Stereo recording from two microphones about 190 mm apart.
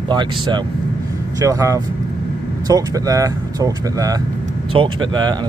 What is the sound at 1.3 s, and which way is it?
Speech, 15° right (ahead or behind).